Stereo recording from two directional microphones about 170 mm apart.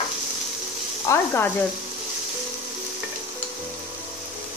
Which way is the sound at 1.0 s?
15° left (ahead or behind).